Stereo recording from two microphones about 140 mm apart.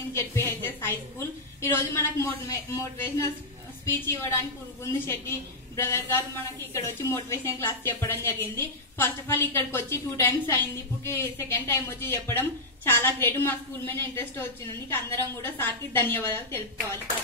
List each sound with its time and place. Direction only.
0.1 s a woman's voice: 15° left (ahead or behind)